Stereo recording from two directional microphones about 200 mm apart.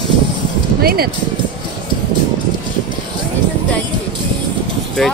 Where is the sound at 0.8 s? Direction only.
50° right (ahead or behind).